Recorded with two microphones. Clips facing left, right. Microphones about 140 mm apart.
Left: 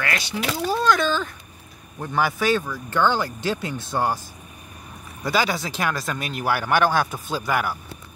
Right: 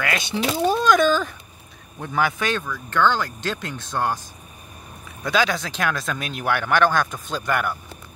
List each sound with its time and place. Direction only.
0.0 s speech: 20° right (ahead or behind)
2.0 s speech: 5° left (ahead or behind)
5.2 s speech: 5° left (ahead or behind)